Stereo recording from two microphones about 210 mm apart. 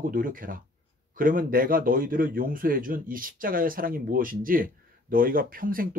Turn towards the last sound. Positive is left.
turn(degrees=-40)  # may be behind; listen again after turning